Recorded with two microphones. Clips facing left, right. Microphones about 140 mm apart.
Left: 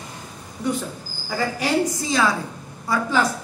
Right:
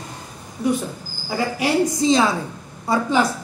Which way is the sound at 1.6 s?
20° right (ahead or behind).